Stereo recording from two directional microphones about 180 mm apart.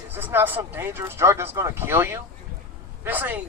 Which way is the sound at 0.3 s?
10° right (ahead or behind).